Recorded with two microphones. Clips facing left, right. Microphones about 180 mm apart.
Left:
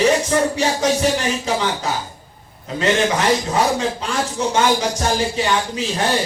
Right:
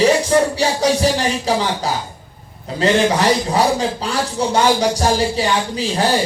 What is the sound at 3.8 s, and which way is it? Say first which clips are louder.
Speech: right 1 dB; 35° right (ahead or behind).